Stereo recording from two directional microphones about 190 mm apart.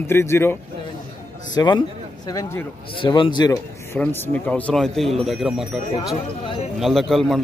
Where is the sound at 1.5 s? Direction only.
25° left (ahead or behind).